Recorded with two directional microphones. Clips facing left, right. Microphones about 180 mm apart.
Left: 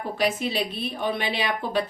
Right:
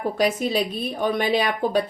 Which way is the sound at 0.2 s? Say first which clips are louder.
Right 3 dB; 40° right (ahead or behind).